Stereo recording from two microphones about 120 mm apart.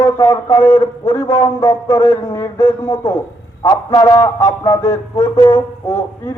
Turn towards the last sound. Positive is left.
turn(degrees=20)  # may be behind; listen again after turning